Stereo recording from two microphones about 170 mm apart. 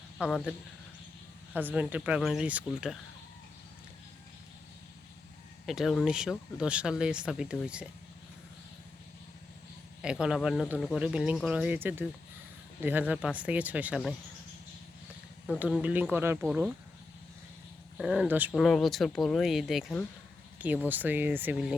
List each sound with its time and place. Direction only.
0.2 s speech: centre (ahead or behind)
1.5 s speech: 10° right (ahead or behind)
5.6 s speech: centre (ahead or behind)
10.0 s speech: 5° right (ahead or behind)
15.5 s speech: 10° right (ahead or behind)
17.9 s speech: 5° right (ahead or behind)
18.5 s speech: centre (ahead or behind)